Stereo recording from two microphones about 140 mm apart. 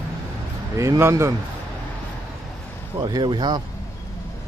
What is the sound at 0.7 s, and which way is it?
Speech, 20° right (ahead or behind).